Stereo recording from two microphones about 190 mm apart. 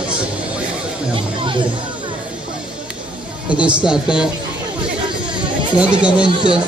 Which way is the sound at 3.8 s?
5° right (ahead or behind).